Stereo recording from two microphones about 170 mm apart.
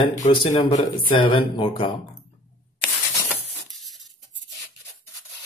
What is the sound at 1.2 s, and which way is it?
Speech, 30° left (ahead or behind).